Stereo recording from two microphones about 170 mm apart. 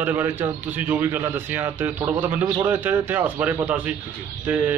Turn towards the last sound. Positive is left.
turn(degrees=-10)  # may be behind; listen again after turning